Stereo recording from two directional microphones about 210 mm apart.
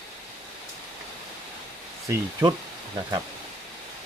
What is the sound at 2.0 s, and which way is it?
Speech, 15° right (ahead or behind).